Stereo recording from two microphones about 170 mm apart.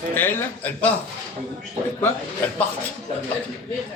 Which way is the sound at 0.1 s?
10° left (ahead or behind).